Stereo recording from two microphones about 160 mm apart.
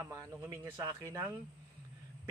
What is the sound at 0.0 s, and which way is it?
A man's voice, 20° right (ahead or behind).